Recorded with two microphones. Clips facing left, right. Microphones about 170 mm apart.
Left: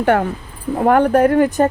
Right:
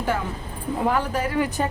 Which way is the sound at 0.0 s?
65° left (ahead or behind).